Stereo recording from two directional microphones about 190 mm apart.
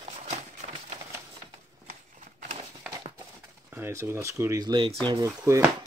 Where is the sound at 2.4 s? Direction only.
40° right (ahead or behind).